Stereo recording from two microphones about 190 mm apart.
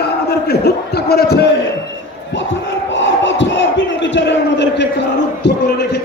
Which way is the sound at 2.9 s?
75° left (ahead or behind).